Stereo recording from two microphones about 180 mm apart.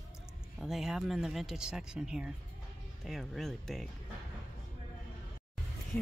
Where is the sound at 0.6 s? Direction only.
Centre (ahead or behind).